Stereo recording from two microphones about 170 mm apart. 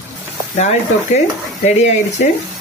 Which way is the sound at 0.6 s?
40° left (ahead or behind).